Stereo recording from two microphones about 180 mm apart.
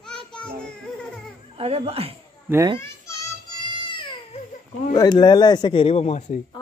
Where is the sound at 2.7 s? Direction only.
15° left (ahead or behind).